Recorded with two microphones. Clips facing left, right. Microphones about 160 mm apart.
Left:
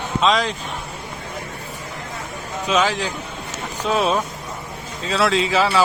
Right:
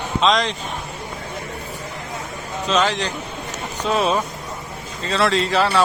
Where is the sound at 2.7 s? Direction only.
5° left (ahead or behind).